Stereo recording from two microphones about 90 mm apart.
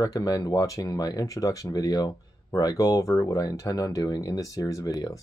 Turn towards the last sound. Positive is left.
turn(degrees=40)  # may be behind; listen again after turning